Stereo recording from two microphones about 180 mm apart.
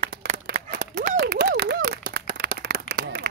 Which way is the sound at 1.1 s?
65° right (ahead or behind).